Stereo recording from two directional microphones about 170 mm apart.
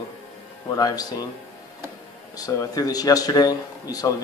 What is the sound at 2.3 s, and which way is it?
Speech, 20° left (ahead or behind).